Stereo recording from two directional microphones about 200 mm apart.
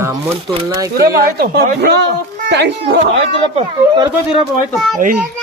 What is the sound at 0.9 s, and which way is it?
Speech, 50° right (ahead or behind).